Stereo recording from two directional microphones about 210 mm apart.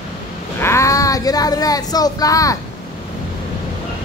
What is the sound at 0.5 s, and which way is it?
Child singing, 10° left (ahead or behind).